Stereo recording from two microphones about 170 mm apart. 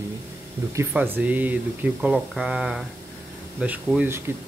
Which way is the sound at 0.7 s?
10° right (ahead or behind).